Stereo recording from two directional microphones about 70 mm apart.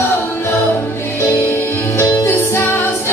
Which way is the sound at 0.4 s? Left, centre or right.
Left.